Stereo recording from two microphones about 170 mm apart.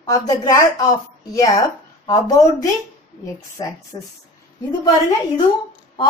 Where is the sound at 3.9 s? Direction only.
25° left (ahead or behind).